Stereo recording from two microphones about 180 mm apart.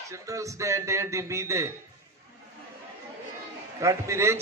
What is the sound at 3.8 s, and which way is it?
Speech, 15° right (ahead or behind).